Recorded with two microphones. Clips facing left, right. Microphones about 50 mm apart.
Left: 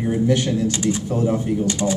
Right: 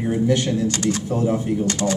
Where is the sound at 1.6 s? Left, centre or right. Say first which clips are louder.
Even; right.